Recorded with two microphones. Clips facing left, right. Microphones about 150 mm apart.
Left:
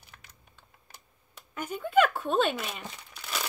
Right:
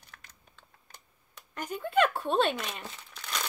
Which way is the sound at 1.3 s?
5° left (ahead or behind).